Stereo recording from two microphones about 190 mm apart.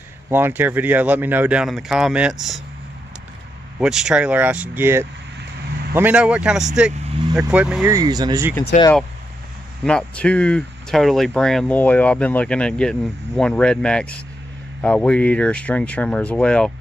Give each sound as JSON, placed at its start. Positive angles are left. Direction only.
{"t": 0.3, "sound": "speech", "side_deg": -10}
{"t": 3.8, "sound": "speech", "side_deg": -5}
{"t": 7.9, "sound": "speech", "side_deg": -20}
{"t": 8.7, "sound": "speech", "side_deg": 45}
{"t": 9.8, "sound": "speech", "side_deg": 5}